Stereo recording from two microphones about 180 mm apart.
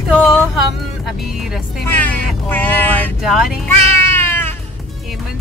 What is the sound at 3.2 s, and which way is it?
Speech, centre (ahead or behind).